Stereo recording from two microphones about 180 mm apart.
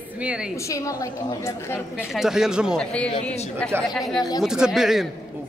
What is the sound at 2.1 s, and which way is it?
Speech, centre (ahead or behind).